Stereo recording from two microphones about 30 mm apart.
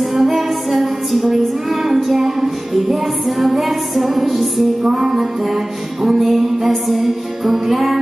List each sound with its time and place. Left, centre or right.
0.1 s music: centre
2.0 s music: centre
4.9 s music: centre